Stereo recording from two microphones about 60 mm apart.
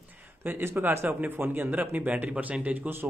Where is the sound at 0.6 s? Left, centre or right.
Right.